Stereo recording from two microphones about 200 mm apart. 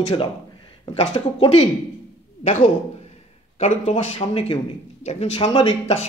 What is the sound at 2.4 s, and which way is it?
Speech, 40° left (ahead or behind).